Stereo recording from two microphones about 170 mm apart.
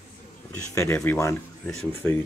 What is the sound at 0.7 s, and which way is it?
Speech, 15° left (ahead or behind).